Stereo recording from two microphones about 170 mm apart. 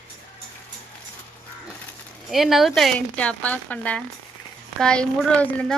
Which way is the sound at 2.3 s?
Centre (ahead or behind).